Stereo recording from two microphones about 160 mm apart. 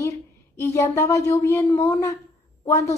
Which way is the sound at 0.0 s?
15° left (ahead or behind).